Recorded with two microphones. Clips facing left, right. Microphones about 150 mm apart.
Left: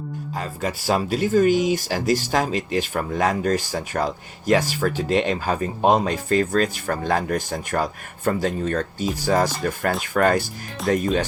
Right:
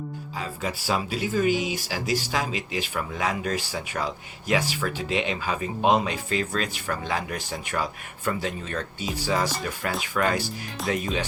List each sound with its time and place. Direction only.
0.3 s speech: 45° left (ahead or behind)